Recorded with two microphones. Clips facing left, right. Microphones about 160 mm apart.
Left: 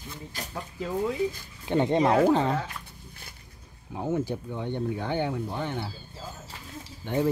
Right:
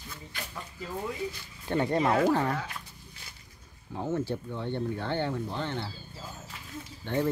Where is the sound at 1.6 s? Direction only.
20° left (ahead or behind).